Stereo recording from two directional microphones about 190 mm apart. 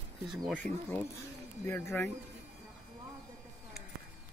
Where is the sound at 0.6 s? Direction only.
10° left (ahead or behind).